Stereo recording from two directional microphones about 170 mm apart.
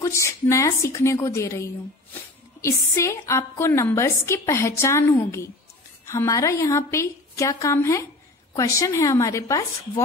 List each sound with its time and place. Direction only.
0.0 s a woman's voice: 15° left (ahead or behind)